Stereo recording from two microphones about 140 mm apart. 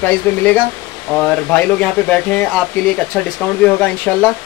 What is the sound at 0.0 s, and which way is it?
Speech, 15° left (ahead or behind).